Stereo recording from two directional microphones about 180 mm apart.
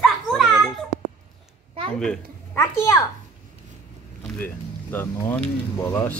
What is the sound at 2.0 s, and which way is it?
Speech, 5° left (ahead or behind).